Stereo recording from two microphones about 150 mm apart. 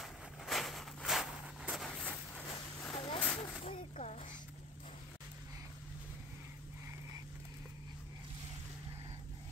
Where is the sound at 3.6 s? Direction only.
50° left (ahead or behind).